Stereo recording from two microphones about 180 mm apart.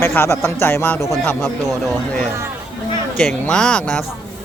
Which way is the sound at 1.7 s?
Centre (ahead or behind).